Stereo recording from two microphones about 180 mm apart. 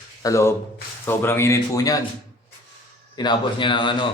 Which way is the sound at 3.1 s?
25° left (ahead or behind).